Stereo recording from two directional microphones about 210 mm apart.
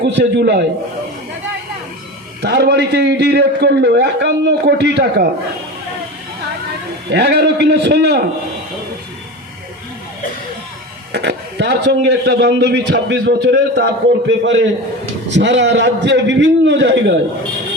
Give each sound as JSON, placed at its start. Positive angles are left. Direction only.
{"t": 0.0, "sound": "a man's voice", "side_deg": -55}
{"t": 2.4, "sound": "a man's voice", "side_deg": -55}
{"t": 7.1, "sound": "a man's voice", "side_deg": -55}
{"t": 11.1, "sound": "a man's voice", "side_deg": -55}